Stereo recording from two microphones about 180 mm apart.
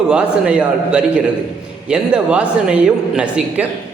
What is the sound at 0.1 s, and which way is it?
A man's voice, 5° right (ahead or behind).